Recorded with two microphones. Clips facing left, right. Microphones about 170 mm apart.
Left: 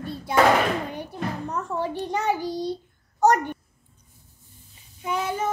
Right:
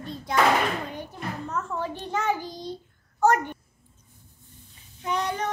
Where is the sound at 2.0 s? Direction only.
15° left (ahead or behind).